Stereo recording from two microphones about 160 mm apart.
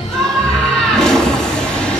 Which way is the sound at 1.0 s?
5° left (ahead or behind).